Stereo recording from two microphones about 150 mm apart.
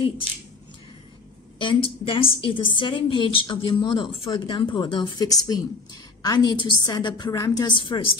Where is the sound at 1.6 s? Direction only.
35° left (ahead or behind).